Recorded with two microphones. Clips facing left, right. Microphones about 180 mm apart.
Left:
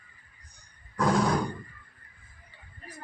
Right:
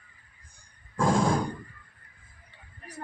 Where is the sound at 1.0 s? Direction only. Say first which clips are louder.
Right 1 dB; 25° right (ahead or behind).